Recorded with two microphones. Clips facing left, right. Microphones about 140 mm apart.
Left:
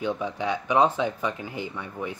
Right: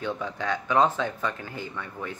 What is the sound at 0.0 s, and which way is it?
Speech, 15° left (ahead or behind).